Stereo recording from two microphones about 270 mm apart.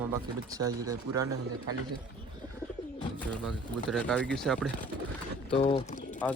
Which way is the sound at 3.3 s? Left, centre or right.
Centre.